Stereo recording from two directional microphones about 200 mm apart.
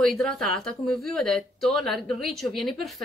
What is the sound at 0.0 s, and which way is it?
Speech, centre (ahead or behind).